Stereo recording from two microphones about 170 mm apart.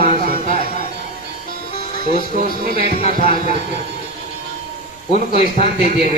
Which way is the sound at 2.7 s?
35° left (ahead or behind).